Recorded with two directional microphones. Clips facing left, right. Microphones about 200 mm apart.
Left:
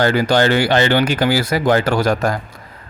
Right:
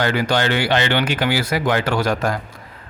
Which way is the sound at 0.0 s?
40° left (ahead or behind).